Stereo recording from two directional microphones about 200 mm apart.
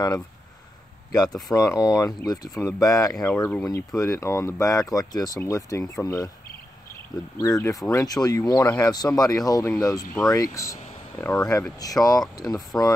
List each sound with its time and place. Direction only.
1.5 s speech: 15° left (ahead or behind)
7.3 s speech: 15° left (ahead or behind)
11.8 s speech: 20° left (ahead or behind)